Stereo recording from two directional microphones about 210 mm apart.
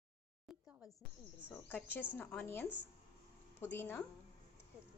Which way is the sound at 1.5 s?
5° left (ahead or behind).